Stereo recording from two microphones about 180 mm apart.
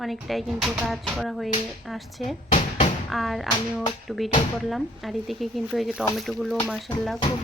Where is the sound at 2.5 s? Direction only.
35° left (ahead or behind).